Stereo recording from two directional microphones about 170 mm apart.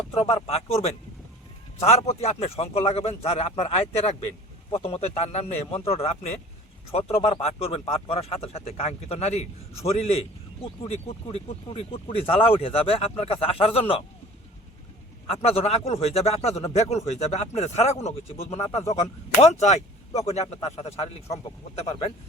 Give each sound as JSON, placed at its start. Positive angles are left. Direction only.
{"t": 0.1, "sound": "speech", "side_deg": 35}
{"t": 15.3, "sound": "speech", "side_deg": 35}